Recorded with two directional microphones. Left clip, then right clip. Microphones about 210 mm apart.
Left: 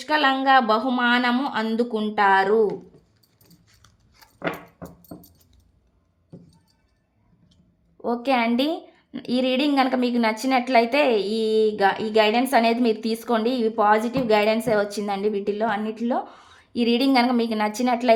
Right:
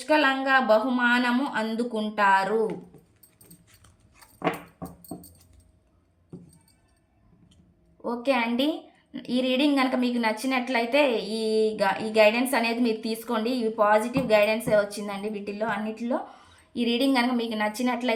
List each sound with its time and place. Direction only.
0.0 s a woman's voice: 50° left (ahead or behind)
8.0 s a woman's voice: 55° left (ahead or behind)